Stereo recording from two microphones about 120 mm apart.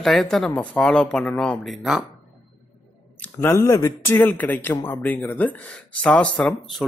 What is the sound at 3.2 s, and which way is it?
Speech, 20° left (ahead or behind).